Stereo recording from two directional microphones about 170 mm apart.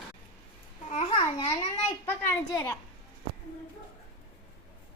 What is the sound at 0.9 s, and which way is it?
Speech, 40° left (ahead or behind).